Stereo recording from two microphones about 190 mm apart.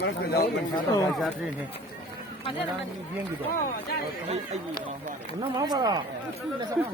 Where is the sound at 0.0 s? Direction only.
55° left (ahead or behind).